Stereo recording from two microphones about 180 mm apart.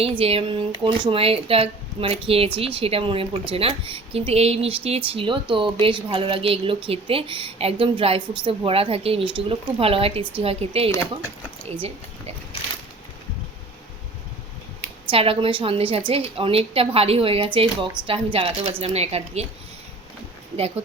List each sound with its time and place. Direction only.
0.0 s a woman's voice: 30° right (ahead or behind)
10.9 s speech: 15° left (ahead or behind)
15.1 s a woman's voice: 30° right (ahead or behind)